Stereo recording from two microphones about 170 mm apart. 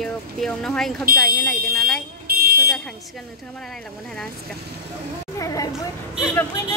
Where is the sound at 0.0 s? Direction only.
5° left (ahead or behind).